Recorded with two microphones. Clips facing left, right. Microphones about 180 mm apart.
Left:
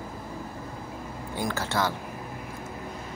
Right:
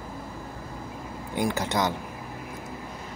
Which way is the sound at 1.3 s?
15° right (ahead or behind).